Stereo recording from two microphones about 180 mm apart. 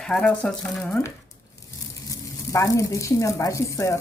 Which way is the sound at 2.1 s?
20° left (ahead or behind).